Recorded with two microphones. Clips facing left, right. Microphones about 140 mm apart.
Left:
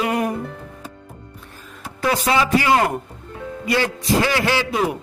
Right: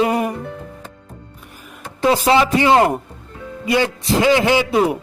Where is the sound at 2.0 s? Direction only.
25° right (ahead or behind).